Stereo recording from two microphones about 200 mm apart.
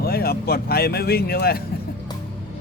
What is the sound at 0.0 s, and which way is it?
Speech, 50° left (ahead or behind).